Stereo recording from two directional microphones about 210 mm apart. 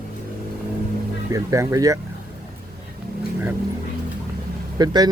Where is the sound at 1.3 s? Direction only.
15° right (ahead or behind).